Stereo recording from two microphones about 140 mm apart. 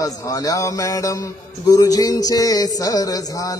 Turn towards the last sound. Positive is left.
turn(degrees=25)  # may be behind; listen again after turning